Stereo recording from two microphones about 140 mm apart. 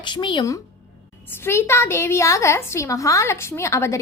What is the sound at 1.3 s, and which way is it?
A woman's voice, 15° left (ahead or behind).